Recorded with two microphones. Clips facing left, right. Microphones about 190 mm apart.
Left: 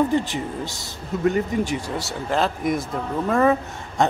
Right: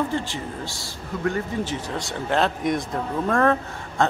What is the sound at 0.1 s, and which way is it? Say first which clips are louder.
A man's voice: left 5 dB; 20° left (ahead or behind).